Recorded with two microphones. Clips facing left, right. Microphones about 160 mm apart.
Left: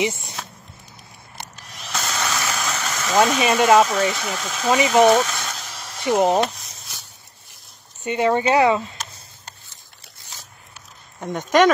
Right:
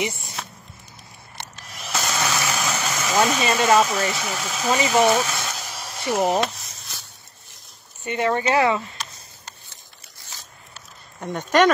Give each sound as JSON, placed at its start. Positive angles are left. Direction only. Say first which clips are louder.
{"t": 1.7, "sound": "vehicle", "louder": "right 2 dB", "side_deg": -5}
{"t": 3.3, "sound": "speech", "louder": "left 4 dB", "side_deg": 15}
{"t": 3.9, "sound": "speech", "louder": "left 3 dB", "side_deg": -5}
{"t": 4.6, "sound": "speech", "louder": "left 4 dB", "side_deg": 15}
{"t": 5.1, "sound": "a sound", "louder": "left 3 dB", "side_deg": -10}
{"t": 6.0, "sound": "speech", "louder": "left 3 dB", "side_deg": 15}
{"t": 8.0, "sound": "speech", "louder": "left 3 dB", "side_deg": 15}
{"t": 11.1, "sound": "speech", "louder": "left 2 dB", "side_deg": 10}